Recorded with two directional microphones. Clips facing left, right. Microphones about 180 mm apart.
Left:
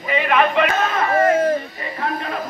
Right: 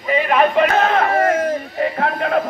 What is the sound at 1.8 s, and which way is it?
Speech, 70° right (ahead or behind).